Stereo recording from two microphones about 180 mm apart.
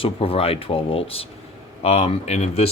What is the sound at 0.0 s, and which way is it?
Speech, 30° left (ahead or behind).